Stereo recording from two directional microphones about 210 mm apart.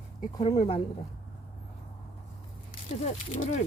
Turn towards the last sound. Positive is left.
turn(degrees=35)  # may be behind; listen again after turning